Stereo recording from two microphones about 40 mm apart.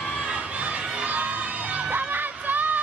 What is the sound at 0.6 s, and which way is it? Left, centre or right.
Crowd, right.